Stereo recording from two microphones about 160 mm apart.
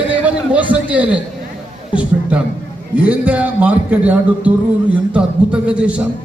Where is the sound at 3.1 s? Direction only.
10° right (ahead or behind).